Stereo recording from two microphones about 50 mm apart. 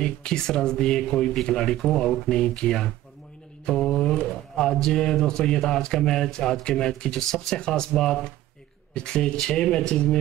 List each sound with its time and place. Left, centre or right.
0.0 s speech: centre